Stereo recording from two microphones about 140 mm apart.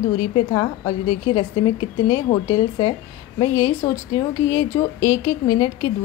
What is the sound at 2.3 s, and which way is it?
Speech, 55° left (ahead or behind).